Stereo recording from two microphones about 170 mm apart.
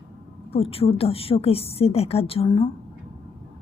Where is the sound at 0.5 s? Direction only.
35° left (ahead or behind).